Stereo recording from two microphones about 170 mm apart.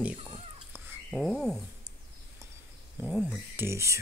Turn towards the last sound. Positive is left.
turn(degrees=-15)  # may be behind; listen again after turning